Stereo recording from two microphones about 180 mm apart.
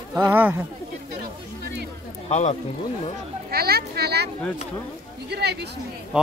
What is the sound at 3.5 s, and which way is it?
Speech, 60° right (ahead or behind).